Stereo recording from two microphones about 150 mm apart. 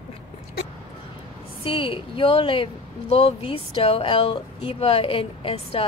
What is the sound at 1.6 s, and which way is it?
Speech, 35° left (ahead or behind).